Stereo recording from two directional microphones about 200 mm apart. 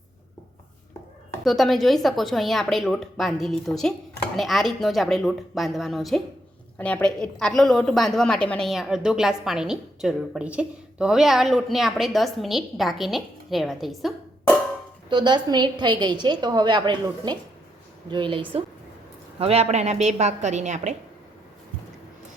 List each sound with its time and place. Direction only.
1.5 s a woman's voice: centre (ahead or behind)
15.1 s a woman's voice: 20° right (ahead or behind)